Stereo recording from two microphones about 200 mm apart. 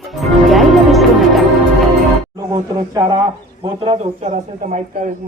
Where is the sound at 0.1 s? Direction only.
Centre (ahead or behind).